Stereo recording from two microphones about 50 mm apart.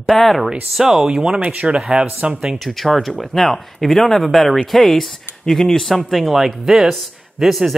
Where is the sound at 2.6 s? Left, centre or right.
Centre.